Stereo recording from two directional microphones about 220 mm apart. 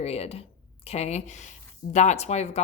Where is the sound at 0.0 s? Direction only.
30° left (ahead or behind).